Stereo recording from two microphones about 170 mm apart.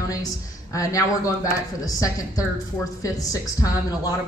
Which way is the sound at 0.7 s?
20° left (ahead or behind).